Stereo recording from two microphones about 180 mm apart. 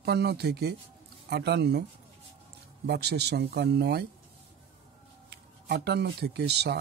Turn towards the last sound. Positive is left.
turn(degrees=-65)  # may be behind; listen again after turning